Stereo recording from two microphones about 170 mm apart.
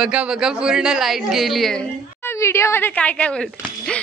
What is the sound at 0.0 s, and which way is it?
Speech, 5° right (ahead or behind).